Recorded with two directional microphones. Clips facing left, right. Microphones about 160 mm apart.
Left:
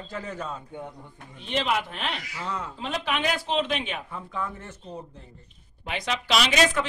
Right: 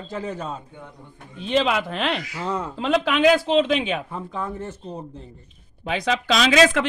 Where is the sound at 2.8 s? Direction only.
90° right.